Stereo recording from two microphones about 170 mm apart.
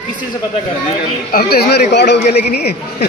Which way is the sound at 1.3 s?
65° left (ahead or behind).